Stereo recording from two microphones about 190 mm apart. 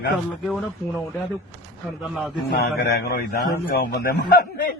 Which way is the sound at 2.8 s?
55° left (ahead or behind).